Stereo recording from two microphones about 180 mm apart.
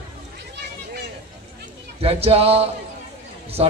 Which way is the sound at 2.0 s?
35° right (ahead or behind).